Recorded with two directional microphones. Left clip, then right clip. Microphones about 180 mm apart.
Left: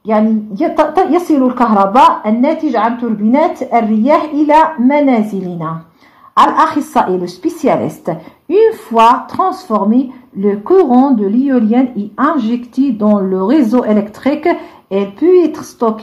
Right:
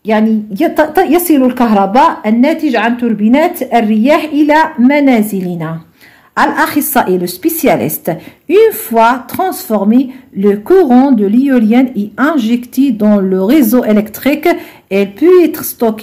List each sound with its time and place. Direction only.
0.0 s a woman's voice: 40° right (ahead or behind)